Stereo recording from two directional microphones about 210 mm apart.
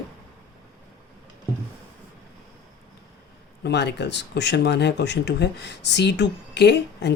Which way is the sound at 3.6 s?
55° left (ahead or behind).